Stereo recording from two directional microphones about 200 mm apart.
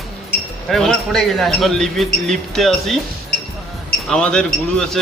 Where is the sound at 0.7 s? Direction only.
Centre (ahead or behind).